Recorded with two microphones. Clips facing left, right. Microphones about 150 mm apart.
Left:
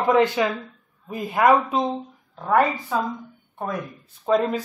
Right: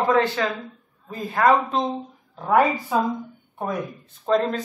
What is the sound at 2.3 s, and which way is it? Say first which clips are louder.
Speech: right 1 dB; 5° right (ahead or behind).